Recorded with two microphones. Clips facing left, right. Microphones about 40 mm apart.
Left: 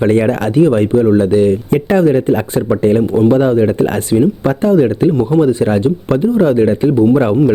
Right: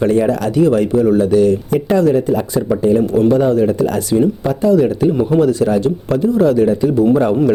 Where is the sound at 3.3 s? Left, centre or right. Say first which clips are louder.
Left 2 dB; left.